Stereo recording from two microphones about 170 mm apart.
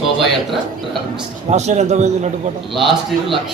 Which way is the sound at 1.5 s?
40° right (ahead or behind).